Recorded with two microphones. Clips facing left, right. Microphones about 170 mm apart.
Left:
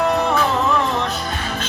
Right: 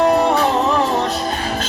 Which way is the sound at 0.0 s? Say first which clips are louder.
Right 4 dB; 35° right (ahead or behind).